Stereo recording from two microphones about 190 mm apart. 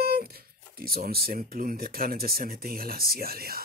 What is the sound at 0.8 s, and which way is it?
Speech, 55° right (ahead or behind).